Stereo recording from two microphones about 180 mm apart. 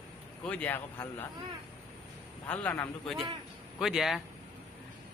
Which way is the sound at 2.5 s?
10° left (ahead or behind).